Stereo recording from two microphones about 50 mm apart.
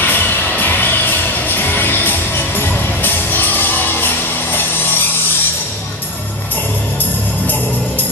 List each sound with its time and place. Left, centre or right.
0.0 s music: left